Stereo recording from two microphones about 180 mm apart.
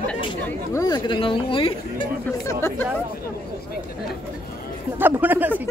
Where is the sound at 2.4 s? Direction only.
15° left (ahead or behind).